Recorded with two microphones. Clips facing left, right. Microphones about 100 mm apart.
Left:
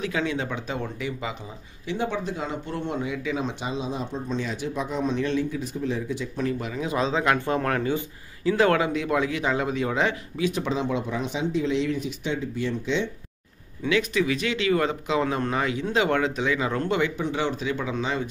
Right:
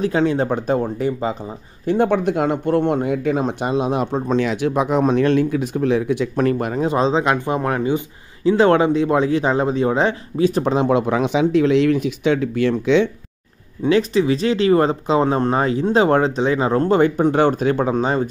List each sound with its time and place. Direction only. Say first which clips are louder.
0.0 s speech: right 9 dB; 40° right (ahead or behind)
1.9 s speech: right 11 dB; 55° right (ahead or behind)
6.9 s speech: right 5 dB; 30° right (ahead or behind)
10.7 s speech: right 9 dB; 65° right (ahead or behind)
13.8 s speech: right 7 dB; 35° right (ahead or behind)